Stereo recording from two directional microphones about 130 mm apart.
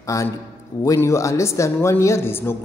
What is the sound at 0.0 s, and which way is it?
A man's voice, 25° left (ahead or behind).